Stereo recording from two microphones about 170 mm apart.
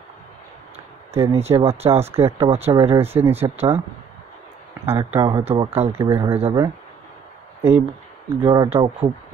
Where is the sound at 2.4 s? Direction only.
35° right (ahead or behind).